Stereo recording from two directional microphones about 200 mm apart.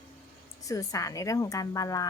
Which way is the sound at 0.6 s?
15° left (ahead or behind).